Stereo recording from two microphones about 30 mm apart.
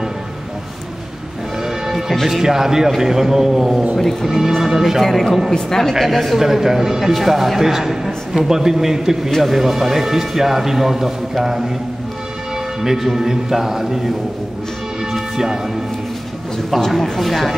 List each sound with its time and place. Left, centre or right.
1.6 s music: centre
2.2 s a man's voice: centre
3.9 s a woman's voice: centre
4.3 s a man's voice: centre
5.0 s a woman's voice: centre
5.9 s a man's voice: centre
9.4 s a man's voice: centre
12.8 s a man's voice: centre
15.1 s music: centre
16.9 s speech: centre